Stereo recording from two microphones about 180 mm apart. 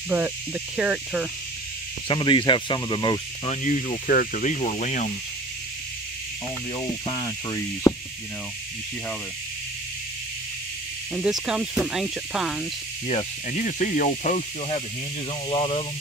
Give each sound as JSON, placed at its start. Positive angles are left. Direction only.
{"t": 0.1, "sound": "speech", "side_deg": -10}
{"t": 2.0, "sound": "speech", "side_deg": 25}
{"t": 3.6, "sound": "speech", "side_deg": 35}
{"t": 6.8, "sound": "speech", "side_deg": 25}
{"t": 11.1, "sound": "speech", "side_deg": -5}
{"t": 13.0, "sound": "speech", "side_deg": 40}